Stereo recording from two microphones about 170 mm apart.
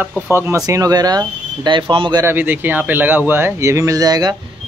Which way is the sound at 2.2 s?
10° right (ahead or behind).